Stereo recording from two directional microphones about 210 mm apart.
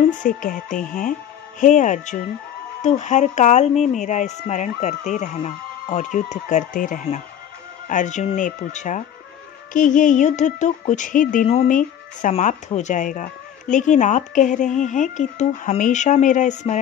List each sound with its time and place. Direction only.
0.1 s speech: 40° left (ahead or behind)